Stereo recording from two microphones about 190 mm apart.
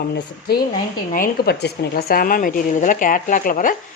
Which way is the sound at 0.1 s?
55° left (ahead or behind).